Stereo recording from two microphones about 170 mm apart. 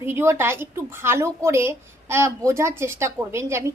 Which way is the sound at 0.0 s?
15° right (ahead or behind).